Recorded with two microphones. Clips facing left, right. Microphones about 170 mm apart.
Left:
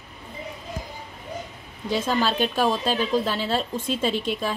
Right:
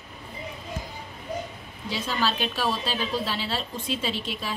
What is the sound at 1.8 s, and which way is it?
A woman's voice, 50° left (ahead or behind).